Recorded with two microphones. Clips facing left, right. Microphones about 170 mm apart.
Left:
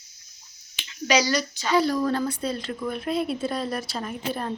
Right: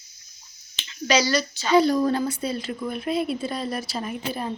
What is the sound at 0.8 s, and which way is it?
Speech, 10° left (ahead or behind).